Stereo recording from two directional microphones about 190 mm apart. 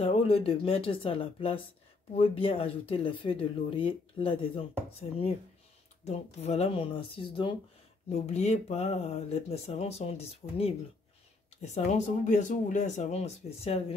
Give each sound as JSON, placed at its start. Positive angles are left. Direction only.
{"t": 0.0, "sound": "speech", "side_deg": 30}
{"t": 6.0, "sound": "speech", "side_deg": 35}